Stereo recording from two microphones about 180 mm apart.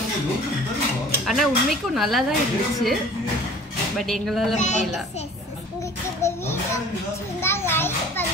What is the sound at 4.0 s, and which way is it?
Speech, centre (ahead or behind).